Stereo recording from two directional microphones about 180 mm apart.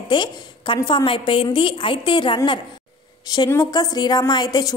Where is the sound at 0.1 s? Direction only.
25° left (ahead or behind).